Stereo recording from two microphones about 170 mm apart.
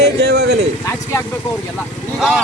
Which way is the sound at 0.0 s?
80° right.